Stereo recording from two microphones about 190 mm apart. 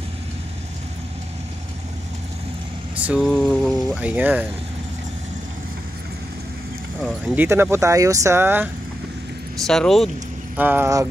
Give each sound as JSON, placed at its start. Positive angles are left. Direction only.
{"t": 3.1, "sound": "speech", "side_deg": 0}
{"t": 7.0, "sound": "speech", "side_deg": 0}
{"t": 7.3, "sound": "speech", "side_deg": -10}
{"t": 9.7, "sound": "speech", "side_deg": 0}